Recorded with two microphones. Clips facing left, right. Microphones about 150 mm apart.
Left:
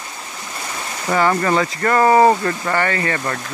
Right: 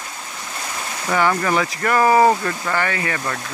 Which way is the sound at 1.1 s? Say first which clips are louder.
Left 2 dB; 15° left (ahead or behind).